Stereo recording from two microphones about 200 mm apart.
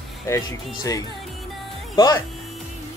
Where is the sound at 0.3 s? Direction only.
15° left (ahead or behind).